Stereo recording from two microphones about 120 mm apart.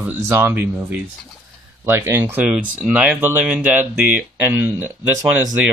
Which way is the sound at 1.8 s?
20° right (ahead or behind).